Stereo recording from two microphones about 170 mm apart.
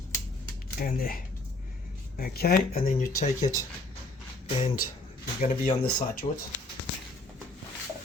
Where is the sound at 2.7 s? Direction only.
45° left (ahead or behind).